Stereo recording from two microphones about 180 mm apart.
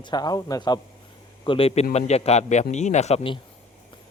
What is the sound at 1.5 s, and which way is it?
A man's voice, 30° left (ahead or behind).